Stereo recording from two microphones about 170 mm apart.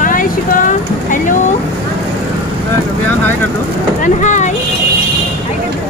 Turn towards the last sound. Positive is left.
turn(degrees=45)  # may be behind; listen again after turning